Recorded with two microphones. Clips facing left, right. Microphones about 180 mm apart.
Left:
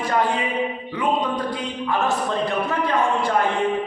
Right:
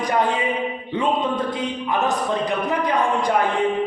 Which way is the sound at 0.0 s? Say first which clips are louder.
Right 1 dB; 15° right (ahead or behind).